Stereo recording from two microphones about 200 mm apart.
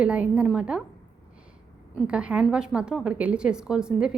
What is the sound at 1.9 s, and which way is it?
A woman's voice, 5° right (ahead or behind).